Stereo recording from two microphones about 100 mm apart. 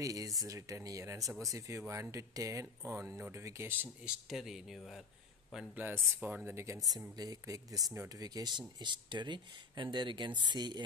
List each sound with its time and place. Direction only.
0.0 s speech: 35° right (ahead or behind)
4.0 s speech: 5° right (ahead or behind)
6.1 s speech: 15° right (ahead or behind); by 10.8 s 50° right (ahead or behind)